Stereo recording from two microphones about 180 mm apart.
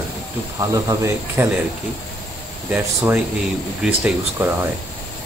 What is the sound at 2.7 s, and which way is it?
Speech, 10° right (ahead or behind).